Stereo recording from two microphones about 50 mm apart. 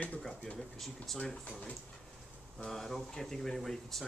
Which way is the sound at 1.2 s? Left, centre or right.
Left.